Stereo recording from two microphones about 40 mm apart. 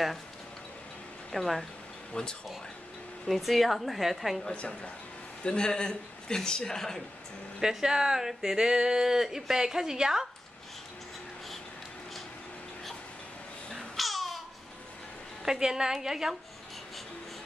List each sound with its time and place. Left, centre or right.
1.3 s speech: centre
2.1 s speech: left
3.3 s speech: centre
4.5 s speech: left; by 7.0 s centre
7.6 s speech: centre
13.7 s babbling: centre
15.4 s speech: centre